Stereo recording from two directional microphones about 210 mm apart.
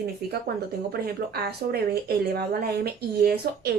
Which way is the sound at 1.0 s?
50° right (ahead or behind).